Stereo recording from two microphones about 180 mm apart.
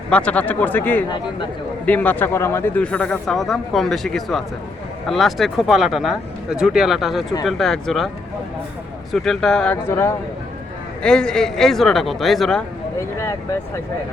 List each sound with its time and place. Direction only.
0.1 s speech: 5° left (ahead or behind)
9.1 s speech: centre (ahead or behind)
13.0 s speech: 15° left (ahead or behind)